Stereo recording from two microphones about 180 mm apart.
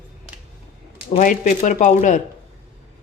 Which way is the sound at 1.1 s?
45° left (ahead or behind).